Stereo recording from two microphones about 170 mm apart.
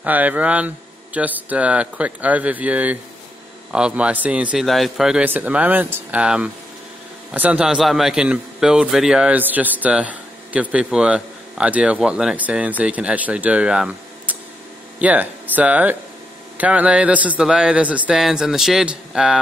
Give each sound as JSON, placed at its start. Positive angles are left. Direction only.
{"t": 0.0, "sound": "a man's voice", "side_deg": -10}